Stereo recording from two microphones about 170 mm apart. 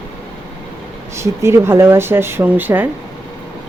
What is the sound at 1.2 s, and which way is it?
Speech, 15° right (ahead or behind).